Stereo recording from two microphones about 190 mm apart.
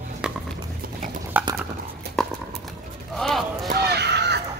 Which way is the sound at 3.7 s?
60° right (ahead or behind).